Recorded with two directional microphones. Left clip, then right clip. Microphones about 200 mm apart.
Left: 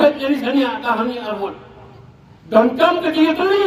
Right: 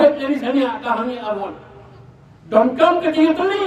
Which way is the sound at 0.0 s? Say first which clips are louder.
Even; 25° right (ahead or behind).